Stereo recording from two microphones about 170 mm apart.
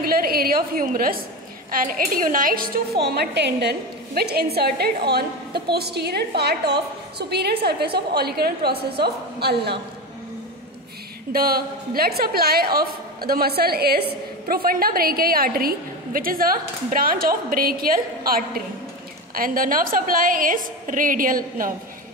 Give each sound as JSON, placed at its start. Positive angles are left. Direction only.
{"t": 0.0, "sound": "a sound", "side_deg": -60}
{"t": 1.7, "sound": "a woman's voice", "side_deg": -55}
{"t": 3.0, "sound": "a woman's voice", "side_deg": -75}
{"t": 11.3, "sound": "a woman's voice", "side_deg": -60}